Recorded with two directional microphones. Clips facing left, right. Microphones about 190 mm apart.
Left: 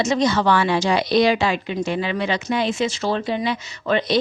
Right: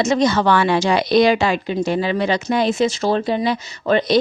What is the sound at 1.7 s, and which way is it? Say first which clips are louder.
Speech: right 4 dB; 40° right (ahead or behind).